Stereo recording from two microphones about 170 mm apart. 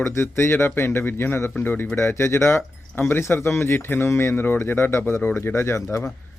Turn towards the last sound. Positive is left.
turn(degrees=15)  # may be behind; listen again after turning